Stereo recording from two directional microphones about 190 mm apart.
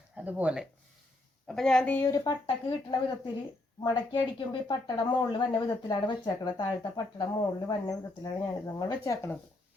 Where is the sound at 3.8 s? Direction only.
25° left (ahead or behind).